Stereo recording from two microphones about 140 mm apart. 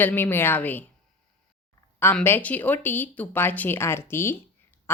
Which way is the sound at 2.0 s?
15° left (ahead or behind).